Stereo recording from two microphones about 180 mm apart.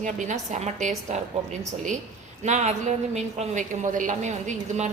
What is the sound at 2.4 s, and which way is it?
A woman's voice, 40° right (ahead or behind).